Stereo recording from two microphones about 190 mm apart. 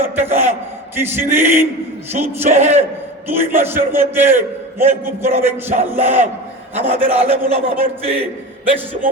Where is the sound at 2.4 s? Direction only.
35° right (ahead or behind).